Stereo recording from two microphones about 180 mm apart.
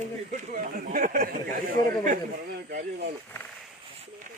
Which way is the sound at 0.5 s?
50° right (ahead or behind).